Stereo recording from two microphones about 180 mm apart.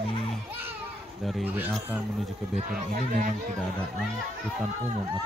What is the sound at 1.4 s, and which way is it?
Speech, 10° right (ahead or behind).